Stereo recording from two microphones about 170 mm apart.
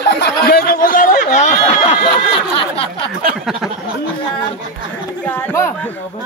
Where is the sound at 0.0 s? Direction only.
80° left; by 1.6 s 45° left (ahead or behind).